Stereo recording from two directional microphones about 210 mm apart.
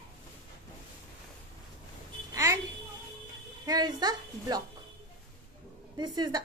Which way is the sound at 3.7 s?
20° right (ahead or behind).